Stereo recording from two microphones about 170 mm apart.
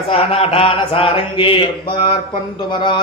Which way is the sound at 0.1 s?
35° left (ahead or behind).